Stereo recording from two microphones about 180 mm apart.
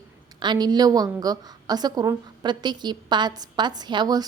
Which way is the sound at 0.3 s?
25° right (ahead or behind).